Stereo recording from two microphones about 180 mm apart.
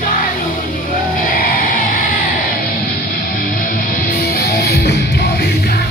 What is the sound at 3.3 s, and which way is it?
Music, 50° left (ahead or behind).